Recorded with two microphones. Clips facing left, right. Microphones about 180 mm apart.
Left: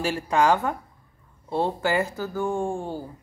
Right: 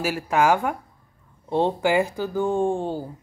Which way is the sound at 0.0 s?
5° right (ahead or behind).